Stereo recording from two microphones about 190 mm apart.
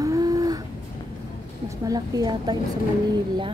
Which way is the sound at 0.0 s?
20° right (ahead or behind).